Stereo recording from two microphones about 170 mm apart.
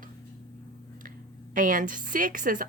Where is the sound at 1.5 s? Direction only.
50° right (ahead or behind).